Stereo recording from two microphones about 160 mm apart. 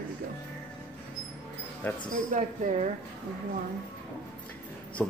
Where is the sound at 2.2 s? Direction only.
50° right (ahead or behind).